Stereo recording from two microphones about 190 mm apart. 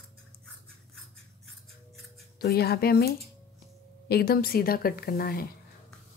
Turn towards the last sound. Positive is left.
turn(degrees=50)  # may be behind; listen again after turning